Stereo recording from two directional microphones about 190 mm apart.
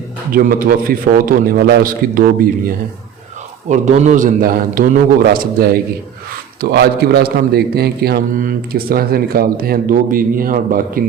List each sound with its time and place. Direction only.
0.3 s a man's voice: 50° right (ahead or behind)
3.7 s a man's voice: 40° right (ahead or behind)